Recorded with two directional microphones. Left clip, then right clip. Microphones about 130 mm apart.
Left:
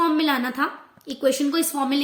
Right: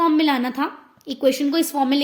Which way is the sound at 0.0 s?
25° right (ahead or behind).